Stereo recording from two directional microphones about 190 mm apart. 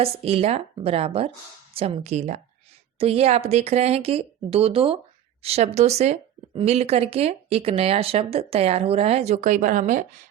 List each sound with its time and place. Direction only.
0.0 s speech: 30° right (ahead or behind)